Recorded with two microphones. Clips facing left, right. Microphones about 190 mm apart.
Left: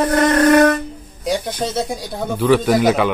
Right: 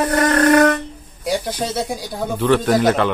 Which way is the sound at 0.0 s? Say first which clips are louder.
Left 2 dB; 10° left (ahead or behind).